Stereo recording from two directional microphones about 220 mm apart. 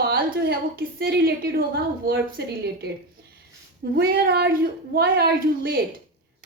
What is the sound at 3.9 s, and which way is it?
A woman's voice, 40° right (ahead or behind).